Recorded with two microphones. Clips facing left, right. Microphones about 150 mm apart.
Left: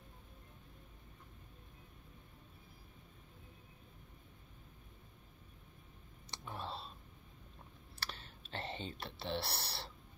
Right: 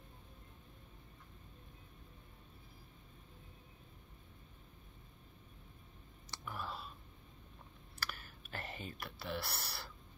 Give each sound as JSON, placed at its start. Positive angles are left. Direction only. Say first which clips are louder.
{"t": 6.3, "sound": "clicking", "louder": "even", "side_deg": 25}
{"t": 8.0, "sound": "clicking", "louder": "right 1 dB", "side_deg": 25}